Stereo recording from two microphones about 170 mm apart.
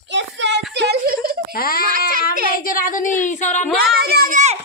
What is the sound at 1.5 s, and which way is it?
Speech, 60° left (ahead or behind).